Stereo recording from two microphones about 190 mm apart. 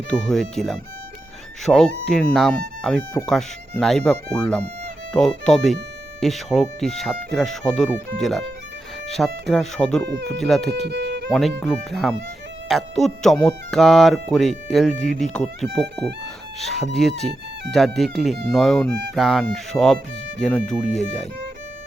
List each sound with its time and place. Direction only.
0.1 s speech: 5° left (ahead or behind)
10.1 s speech: 65° right (ahead or behind)
10.4 s speech: centre (ahead or behind)
10.8 s music: 60° right (ahead or behind)
11.3 s speech: centre (ahead or behind)